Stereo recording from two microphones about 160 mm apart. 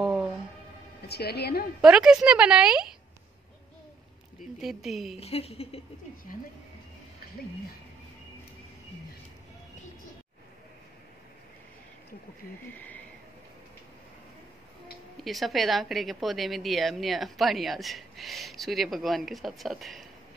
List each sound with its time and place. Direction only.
1.0 s a woman's voice: 90° left
1.8 s a woman's voice: 5° right (ahead or behind)
4.6 s a woman's voice: centre (ahead or behind)
5.1 s a woman's voice: 40° left (ahead or behind)
12.7 s speech: 10° left (ahead or behind)
15.2 s a woman's voice: centre (ahead or behind)